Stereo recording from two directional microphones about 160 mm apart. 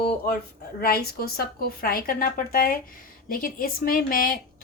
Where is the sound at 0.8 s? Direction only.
70° left (ahead or behind).